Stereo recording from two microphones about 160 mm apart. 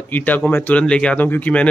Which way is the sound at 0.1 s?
10° left (ahead or behind).